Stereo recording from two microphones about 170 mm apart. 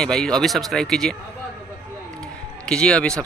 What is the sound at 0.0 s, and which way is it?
Speech, 5° left (ahead or behind).